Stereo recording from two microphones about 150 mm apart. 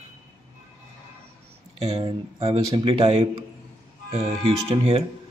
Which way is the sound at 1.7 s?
40° right (ahead or behind).